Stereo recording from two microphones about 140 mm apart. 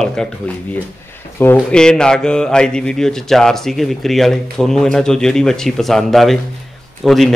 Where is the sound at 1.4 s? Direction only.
10° left (ahead or behind).